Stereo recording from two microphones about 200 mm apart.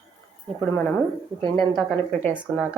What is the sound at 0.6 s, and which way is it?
Speech, 5° left (ahead or behind).